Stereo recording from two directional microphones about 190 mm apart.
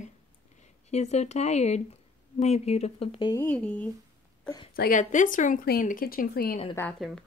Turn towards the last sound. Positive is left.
turn(degrees=5)  # may be behind; listen again after turning